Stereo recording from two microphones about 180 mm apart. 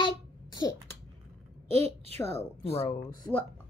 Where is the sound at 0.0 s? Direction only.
20° left (ahead or behind).